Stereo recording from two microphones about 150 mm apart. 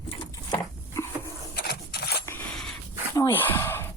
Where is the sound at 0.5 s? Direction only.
20° left (ahead or behind).